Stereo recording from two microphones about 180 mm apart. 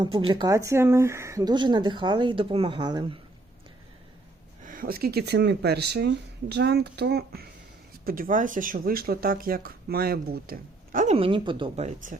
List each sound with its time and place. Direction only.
0.0 s speech: 25° right (ahead or behind)
4.6 s speech: 50° right (ahead or behind)
8.0 s speech: 50° right (ahead or behind); by 11.9 s 25° right (ahead or behind)
11.9 s speech: 45° right (ahead or behind)